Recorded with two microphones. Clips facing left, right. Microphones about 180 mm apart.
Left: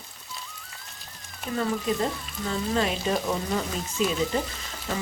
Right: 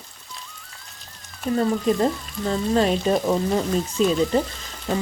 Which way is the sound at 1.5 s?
40° right (ahead or behind).